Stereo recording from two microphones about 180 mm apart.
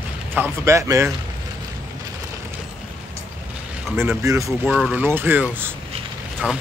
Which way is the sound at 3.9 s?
15° right (ahead or behind).